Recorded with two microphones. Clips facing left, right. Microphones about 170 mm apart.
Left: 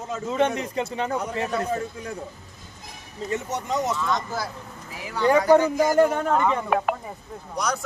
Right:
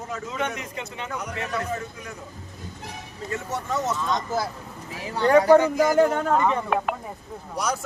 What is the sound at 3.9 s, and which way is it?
Speech, 20° right (ahead or behind).